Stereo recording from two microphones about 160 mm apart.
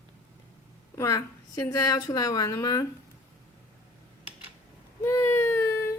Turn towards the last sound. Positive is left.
turn(degrees=15)  # may be behind; listen again after turning